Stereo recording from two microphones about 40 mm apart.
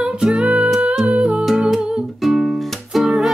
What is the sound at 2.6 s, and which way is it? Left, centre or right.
Music, centre.